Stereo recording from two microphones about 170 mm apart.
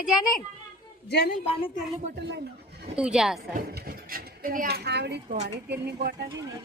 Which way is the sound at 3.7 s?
65° right (ahead or behind).